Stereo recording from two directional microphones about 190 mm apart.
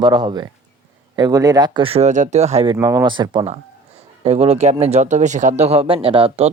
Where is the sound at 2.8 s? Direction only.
20° right (ahead or behind).